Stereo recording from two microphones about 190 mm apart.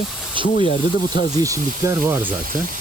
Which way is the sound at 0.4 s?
25° right (ahead or behind).